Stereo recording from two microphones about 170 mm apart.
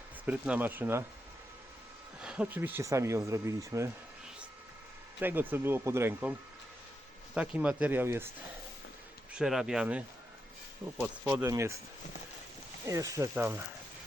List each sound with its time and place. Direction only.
0.3 s speech: 5° right (ahead or behind)
2.2 s speech: 5° right (ahead or behind)
5.2 s speech: 10° right (ahead or behind)
7.3 s speech: 5° right (ahead or behind)
9.3 s speech: 5° right (ahead or behind)
11.0 s speech: 10° right (ahead or behind)
12.8 s speech: 20° right (ahead or behind)